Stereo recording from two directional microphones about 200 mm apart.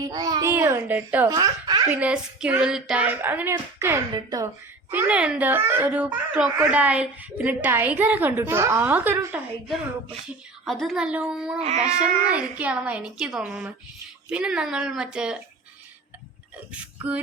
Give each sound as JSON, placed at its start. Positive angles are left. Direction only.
{"t": 0.1, "sound": "a child's voice", "side_deg": -20}
{"t": 1.4, "sound": "a sound", "side_deg": -20}
{"t": 1.9, "sound": "a child's voice", "side_deg": -5}
{"t": 10.7, "sound": "a woman's voice", "side_deg": 0}